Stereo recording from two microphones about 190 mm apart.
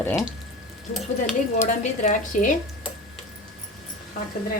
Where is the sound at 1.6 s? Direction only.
40° left (ahead or behind).